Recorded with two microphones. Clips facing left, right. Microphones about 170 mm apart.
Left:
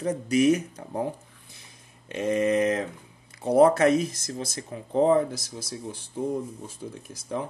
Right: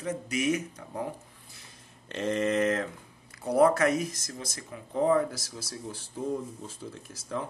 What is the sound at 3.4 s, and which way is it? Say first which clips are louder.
Speech: left 4 dB; 25° left (ahead or behind).